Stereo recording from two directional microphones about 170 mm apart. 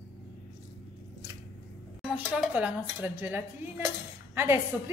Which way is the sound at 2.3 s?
5° right (ahead or behind).